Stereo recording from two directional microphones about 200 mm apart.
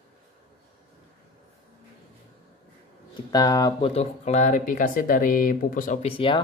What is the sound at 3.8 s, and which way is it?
Speech, 35° left (ahead or behind).